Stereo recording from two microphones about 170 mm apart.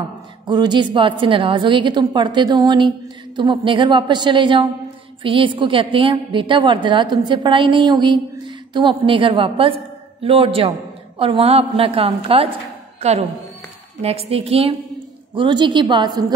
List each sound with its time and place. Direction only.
0.5 s a woman's voice: 25° right (ahead or behind)
14.0 s a woman's voice: 35° right (ahead or behind)